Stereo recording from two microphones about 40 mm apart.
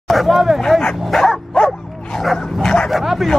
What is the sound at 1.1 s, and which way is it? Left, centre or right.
Dog, centre.